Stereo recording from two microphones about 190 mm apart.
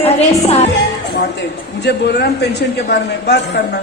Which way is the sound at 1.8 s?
60° left (ahead or behind).